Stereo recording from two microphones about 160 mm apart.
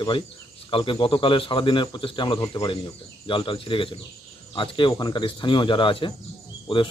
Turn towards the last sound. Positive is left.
turn(degrees=35)  # may be behind; listen again after turning